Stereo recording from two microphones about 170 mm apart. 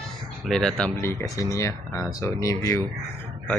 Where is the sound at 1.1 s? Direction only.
20° left (ahead or behind).